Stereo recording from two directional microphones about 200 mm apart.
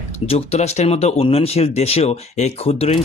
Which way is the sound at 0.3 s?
30° left (ahead or behind).